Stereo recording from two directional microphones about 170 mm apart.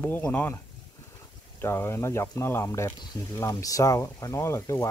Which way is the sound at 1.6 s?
15° left (ahead or behind).